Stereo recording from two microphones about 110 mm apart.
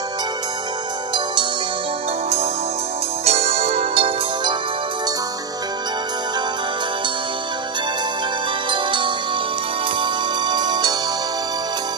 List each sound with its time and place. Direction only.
3.3 s music: 70° right (ahead or behind)
8.6 s music: 45° right (ahead or behind)
10.5 s music: 40° right (ahead or behind)